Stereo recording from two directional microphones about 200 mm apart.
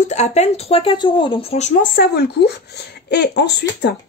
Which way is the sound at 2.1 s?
55° left (ahead or behind).